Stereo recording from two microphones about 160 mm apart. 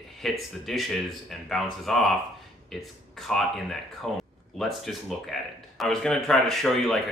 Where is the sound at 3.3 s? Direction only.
Centre (ahead or behind).